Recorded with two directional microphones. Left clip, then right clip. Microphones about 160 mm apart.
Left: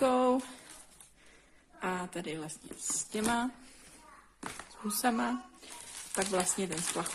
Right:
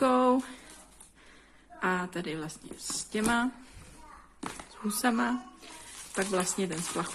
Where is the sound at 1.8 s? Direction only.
10° left (ahead or behind).